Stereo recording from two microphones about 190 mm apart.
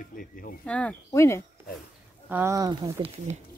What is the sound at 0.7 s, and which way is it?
Speech, 5° left (ahead or behind).